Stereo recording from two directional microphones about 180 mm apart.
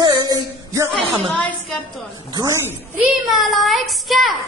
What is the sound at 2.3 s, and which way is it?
Speech, 15° right (ahead or behind).